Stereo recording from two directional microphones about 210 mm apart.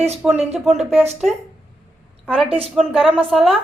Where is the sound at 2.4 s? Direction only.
25° right (ahead or behind).